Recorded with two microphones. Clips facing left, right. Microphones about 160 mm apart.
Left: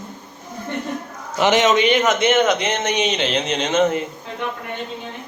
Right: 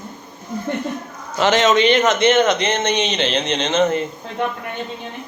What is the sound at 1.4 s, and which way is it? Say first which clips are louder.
Speech: right 1 dB; 15° left (ahead or behind).